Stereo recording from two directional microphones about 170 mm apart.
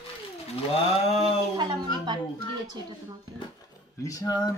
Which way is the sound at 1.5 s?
25° right (ahead or behind).